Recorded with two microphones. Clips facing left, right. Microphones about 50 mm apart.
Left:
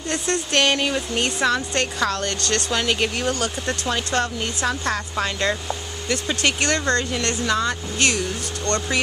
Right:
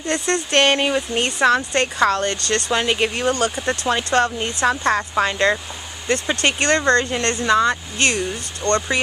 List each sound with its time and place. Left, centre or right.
0.5 s speech: right
0.9 s speech: centre